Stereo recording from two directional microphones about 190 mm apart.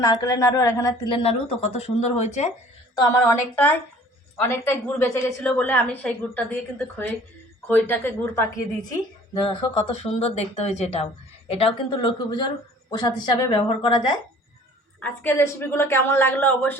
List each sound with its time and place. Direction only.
0.0 s a woman's voice: 15° left (ahead or behind); by 2.5 s 35° left (ahead or behind)
3.0 s a woman's voice: 15° left (ahead or behind)
9.4 s a woman's voice: 30° left (ahead or behind)
15.0 s a woman's voice: 10° left (ahead or behind)